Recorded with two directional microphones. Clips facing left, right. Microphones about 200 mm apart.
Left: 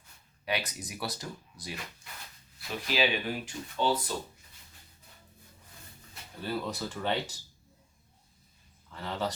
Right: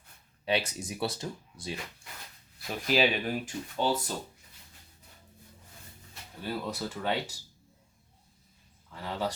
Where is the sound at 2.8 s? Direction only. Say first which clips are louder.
Right 3 dB; 45° right (ahead or behind).